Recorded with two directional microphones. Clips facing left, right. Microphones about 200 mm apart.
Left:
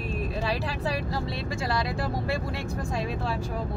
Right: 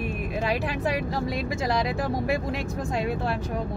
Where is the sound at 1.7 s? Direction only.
15° right (ahead or behind).